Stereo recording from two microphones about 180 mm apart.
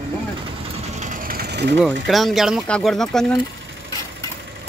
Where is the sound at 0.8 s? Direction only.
40° right (ahead or behind); by 1.7 s 65° right (ahead or behind).